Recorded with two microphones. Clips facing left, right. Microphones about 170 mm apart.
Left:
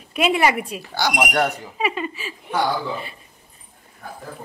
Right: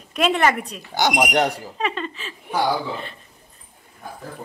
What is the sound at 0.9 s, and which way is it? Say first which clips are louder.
Speech: right 3 dB; 20° right (ahead or behind).